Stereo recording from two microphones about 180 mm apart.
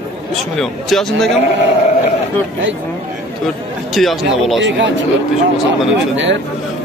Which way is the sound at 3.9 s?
Centre (ahead or behind).